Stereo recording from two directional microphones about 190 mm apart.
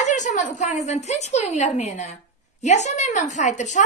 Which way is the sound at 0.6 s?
40° left (ahead or behind).